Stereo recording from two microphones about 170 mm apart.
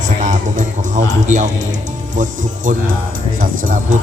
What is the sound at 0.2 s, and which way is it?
Music, 50° right (ahead or behind).